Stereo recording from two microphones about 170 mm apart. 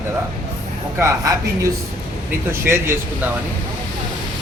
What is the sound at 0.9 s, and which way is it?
A woman's voice, 20° right (ahead or behind).